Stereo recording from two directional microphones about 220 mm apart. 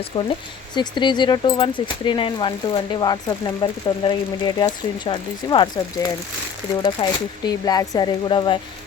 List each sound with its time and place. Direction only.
0.1 s speech: 25° left (ahead or behind)
6.8 s speech: 20° left (ahead or behind)